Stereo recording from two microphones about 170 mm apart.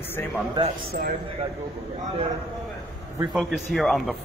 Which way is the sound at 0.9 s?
55° right (ahead or behind).